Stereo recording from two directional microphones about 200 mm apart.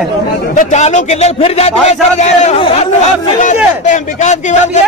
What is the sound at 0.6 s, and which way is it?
A man's voice, 35° left (ahead or behind).